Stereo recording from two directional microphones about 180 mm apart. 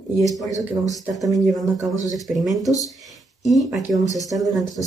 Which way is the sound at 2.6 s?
20° left (ahead or behind).